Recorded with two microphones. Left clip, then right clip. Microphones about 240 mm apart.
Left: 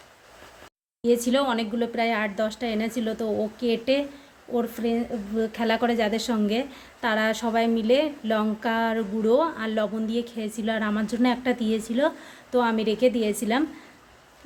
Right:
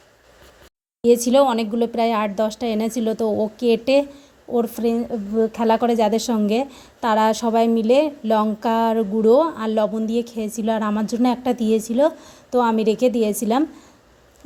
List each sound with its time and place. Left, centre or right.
1.0 s a woman's voice: right